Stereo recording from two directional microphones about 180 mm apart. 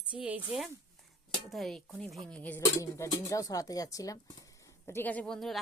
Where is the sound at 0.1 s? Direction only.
5° right (ahead or behind).